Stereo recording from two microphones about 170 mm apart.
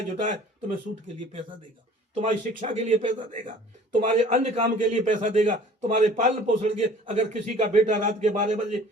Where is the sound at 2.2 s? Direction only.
45° right (ahead or behind).